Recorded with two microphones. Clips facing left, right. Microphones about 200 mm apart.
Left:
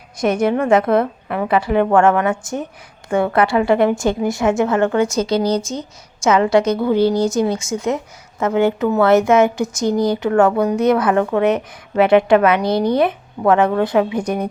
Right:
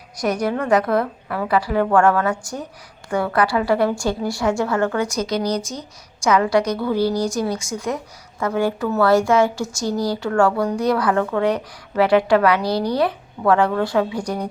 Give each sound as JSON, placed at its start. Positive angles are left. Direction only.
{"t": 0.2, "sound": "a woman's voice", "side_deg": 25}